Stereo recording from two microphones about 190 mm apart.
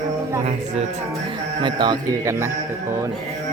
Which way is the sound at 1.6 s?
25° right (ahead or behind).